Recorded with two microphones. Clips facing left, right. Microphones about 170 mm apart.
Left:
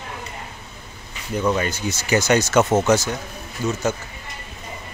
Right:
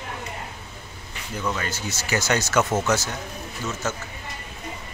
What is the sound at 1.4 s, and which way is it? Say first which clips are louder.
Speech: left 7 dB; 20° left (ahead or behind).